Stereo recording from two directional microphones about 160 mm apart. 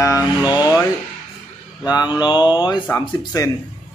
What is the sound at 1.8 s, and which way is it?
Speech, 25° left (ahead or behind).